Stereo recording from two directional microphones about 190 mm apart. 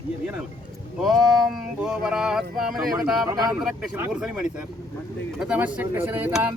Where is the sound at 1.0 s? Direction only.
Centre (ahead or behind).